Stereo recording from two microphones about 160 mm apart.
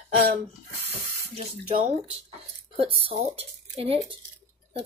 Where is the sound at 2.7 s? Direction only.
35° right (ahead or behind).